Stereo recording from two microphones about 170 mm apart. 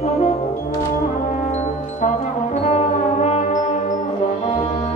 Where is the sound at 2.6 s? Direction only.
40° left (ahead or behind).